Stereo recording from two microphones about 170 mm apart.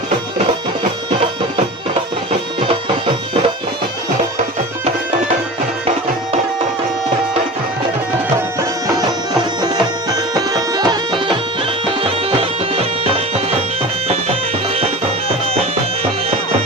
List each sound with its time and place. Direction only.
9.0 s music: 25° right (ahead or behind)